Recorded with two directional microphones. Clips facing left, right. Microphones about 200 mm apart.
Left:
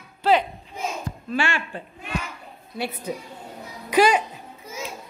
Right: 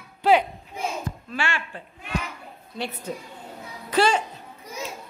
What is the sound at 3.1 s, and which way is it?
A child's voice, 10° left (ahead or behind).